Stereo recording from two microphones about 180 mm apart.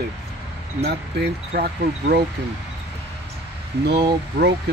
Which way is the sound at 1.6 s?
60° right (ahead or behind).